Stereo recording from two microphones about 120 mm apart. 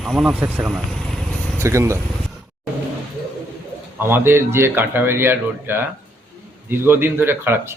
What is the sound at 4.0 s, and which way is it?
Speech, 20° right (ahead or behind).